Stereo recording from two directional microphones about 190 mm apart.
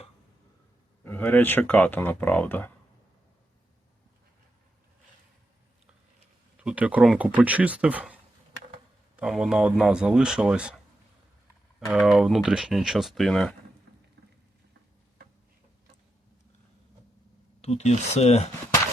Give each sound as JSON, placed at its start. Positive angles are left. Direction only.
{"t": 1.0, "sound": "speech", "side_deg": 10}
{"t": 6.6, "sound": "speech", "side_deg": -5}
{"t": 11.9, "sound": "speech", "side_deg": 0}
{"t": 17.6, "sound": "speech", "side_deg": 35}